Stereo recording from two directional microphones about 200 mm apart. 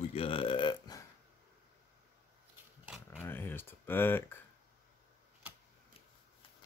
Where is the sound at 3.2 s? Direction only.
10° left (ahead or behind).